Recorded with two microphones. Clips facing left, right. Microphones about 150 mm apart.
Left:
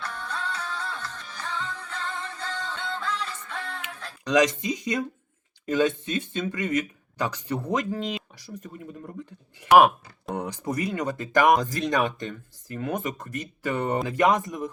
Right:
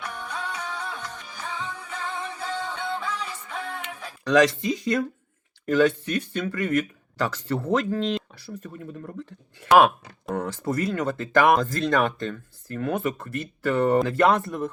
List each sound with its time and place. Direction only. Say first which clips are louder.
0.0 s music: even; 15° right (ahead or behind)
4.2 s speech: right 2 dB; 20° left (ahead or behind)